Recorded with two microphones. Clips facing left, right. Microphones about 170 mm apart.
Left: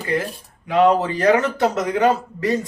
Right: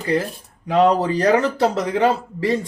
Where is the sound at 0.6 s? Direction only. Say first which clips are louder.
Even; 40° right (ahead or behind).